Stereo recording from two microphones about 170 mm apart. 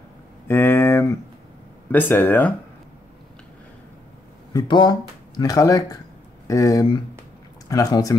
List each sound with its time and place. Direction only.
0.5 s a sound: 15° left (ahead or behind)
1.9 s speech: 10° left (ahead or behind)
4.6 s speech: 25° left (ahead or behind)